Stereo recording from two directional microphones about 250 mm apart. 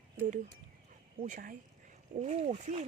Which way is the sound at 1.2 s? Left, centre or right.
Right.